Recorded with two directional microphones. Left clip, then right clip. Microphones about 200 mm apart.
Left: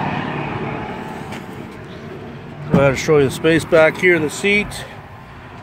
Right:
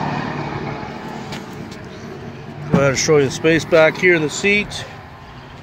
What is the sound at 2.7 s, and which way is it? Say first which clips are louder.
Speech: left 1 dB; 5° left (ahead or behind).